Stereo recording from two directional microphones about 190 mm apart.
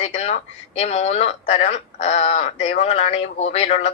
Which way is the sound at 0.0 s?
35° left (ahead or behind).